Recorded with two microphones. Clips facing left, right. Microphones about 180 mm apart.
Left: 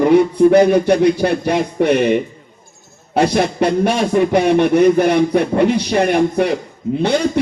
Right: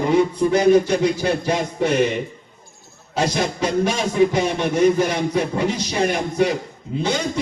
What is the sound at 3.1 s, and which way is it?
A man's voice, 60° left (ahead or behind).